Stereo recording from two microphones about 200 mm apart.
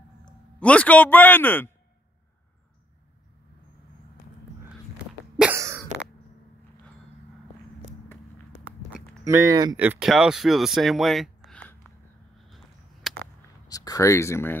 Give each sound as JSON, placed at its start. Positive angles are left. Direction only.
{"t": 0.6, "sound": "speech", "side_deg": 5}
{"t": 5.4, "sound": "cough", "side_deg": -10}
{"t": 9.2, "sound": "speech", "side_deg": -15}
{"t": 9.8, "sound": "speech", "side_deg": -5}
{"t": 12.4, "sound": "a sound", "side_deg": 0}
{"t": 13.7, "sound": "speech", "side_deg": 15}